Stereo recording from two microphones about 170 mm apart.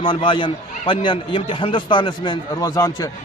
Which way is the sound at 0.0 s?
30° left (ahead or behind).